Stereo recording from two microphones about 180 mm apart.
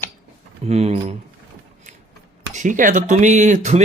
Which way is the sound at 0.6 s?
35° right (ahead or behind).